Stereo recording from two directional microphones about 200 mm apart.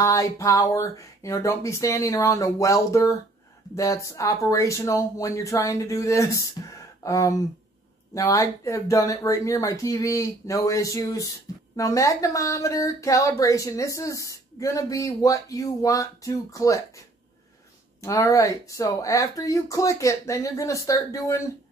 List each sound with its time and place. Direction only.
0.0 s speech: 15° left (ahead or behind)
18.0 s speech: 15° left (ahead or behind)